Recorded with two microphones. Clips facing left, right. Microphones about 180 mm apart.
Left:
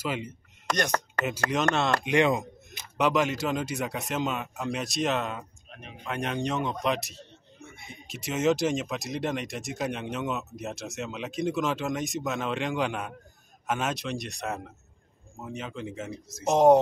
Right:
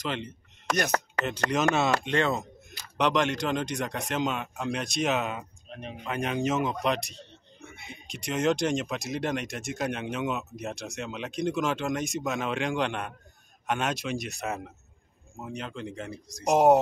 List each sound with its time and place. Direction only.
0.0 s speech: 5° left (ahead or behind)
0.7 s speech: 5° right (ahead or behind)
1.2 s speech: 5° left (ahead or behind)
2.0 s a sound: 15° left (ahead or behind)
3.0 s speech: 5° left (ahead or behind)
5.7 s speech: 35° right (ahead or behind)
6.0 s speech: centre (ahead or behind)
7.7 s a sound: 65° right (ahead or behind)
8.1 s speech: 5° left (ahead or behind)
16.5 s speech: 5° right (ahead or behind)